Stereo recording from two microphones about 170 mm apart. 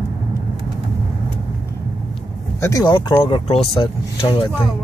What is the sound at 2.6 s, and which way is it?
Speech, 20° left (ahead or behind).